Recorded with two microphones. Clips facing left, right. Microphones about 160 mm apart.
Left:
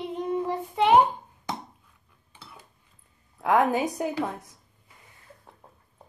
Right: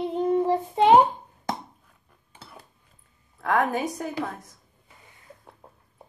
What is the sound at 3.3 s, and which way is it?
Speech, 15° left (ahead or behind).